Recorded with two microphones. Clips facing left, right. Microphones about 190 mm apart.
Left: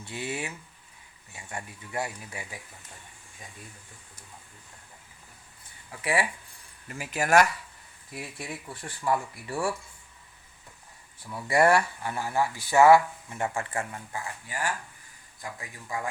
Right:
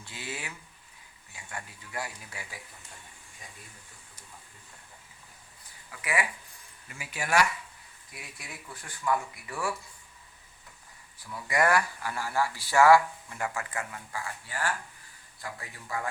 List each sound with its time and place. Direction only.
0.1 s speech: 25° left (ahead or behind)
5.9 s speech: 30° left (ahead or behind)
6.8 s speech: 45° left (ahead or behind)
8.4 s speech: 30° left (ahead or behind)
11.3 s speech: 30° left (ahead or behind)